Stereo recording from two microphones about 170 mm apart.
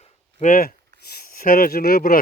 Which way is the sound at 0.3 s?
45° left (ahead or behind).